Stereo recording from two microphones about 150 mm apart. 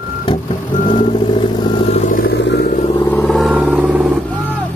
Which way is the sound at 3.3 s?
5° right (ahead or behind).